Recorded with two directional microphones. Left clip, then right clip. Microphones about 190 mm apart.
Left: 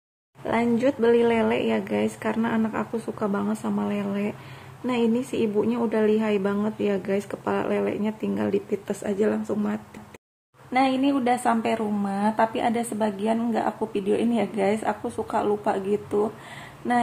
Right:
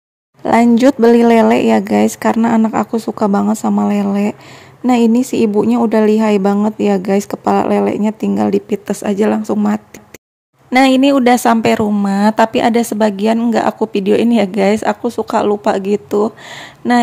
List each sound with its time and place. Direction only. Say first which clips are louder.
0.4 s a woman's voice: right 13 dB; 55° right (ahead or behind)
10.7 s speech: right 12 dB; 60° right (ahead or behind)